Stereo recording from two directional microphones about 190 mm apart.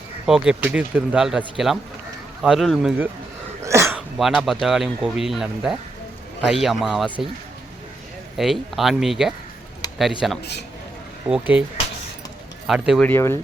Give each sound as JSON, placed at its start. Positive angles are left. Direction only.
{"t": 0.3, "sound": "speech", "side_deg": -5}
{"t": 3.6, "sound": "throat clearing", "side_deg": -15}
{"t": 4.2, "sound": "speech", "side_deg": 0}
{"t": 8.4, "sound": "speech", "side_deg": 0}
{"t": 9.8, "sound": "a sound", "side_deg": 20}
{"t": 10.2, "sound": "speech", "side_deg": 0}
{"t": 12.6, "sound": "speech", "side_deg": 0}
{"t": 13.1, "sound": "speech", "side_deg": 15}